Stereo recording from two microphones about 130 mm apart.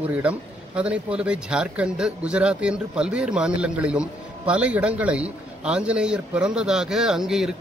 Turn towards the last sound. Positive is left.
turn(degrees=-5)  # may be behind; listen again after turning